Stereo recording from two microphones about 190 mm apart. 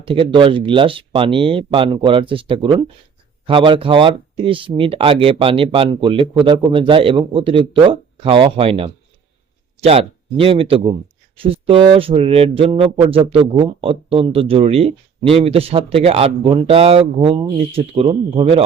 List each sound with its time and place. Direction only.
0.0 s speech: 30° right (ahead or behind)